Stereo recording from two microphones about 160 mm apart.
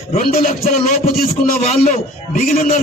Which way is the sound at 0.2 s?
65° left (ahead or behind).